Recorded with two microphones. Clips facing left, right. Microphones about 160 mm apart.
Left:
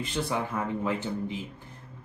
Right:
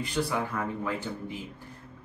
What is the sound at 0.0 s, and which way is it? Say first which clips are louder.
Speech: right 1 dB; 20° left (ahead or behind).